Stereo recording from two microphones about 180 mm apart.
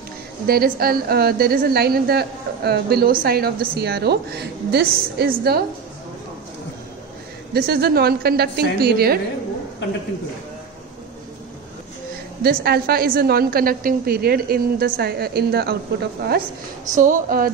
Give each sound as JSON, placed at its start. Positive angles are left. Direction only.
{"t": 0.5, "sound": "a woman's voice", "side_deg": -55}
{"t": 7.5, "sound": "a woman's voice", "side_deg": -60}
{"t": 12.4, "sound": "a woman's voice", "side_deg": -60}
{"t": 16.9, "sound": "a woman's voice", "side_deg": -45}